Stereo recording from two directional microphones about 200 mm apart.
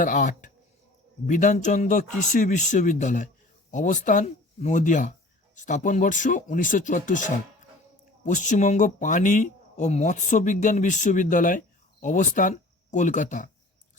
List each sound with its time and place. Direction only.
0.0 s speech: 40° left (ahead or behind)